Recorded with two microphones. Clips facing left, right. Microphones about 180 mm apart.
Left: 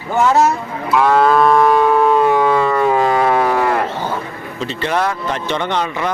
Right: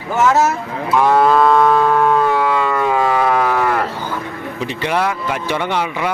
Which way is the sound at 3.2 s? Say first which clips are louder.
Left 1 dB; 20° left (ahead or behind).